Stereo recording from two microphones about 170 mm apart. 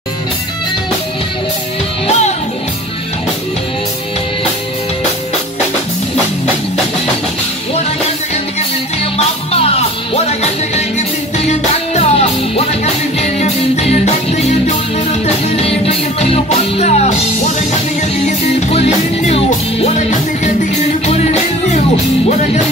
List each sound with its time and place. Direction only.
2.0 s music: 40° left (ahead or behind)
9.5 s music: 35° left (ahead or behind)
18.4 s music: 40° left (ahead or behind)
21.0 s music: 40° left (ahead or behind)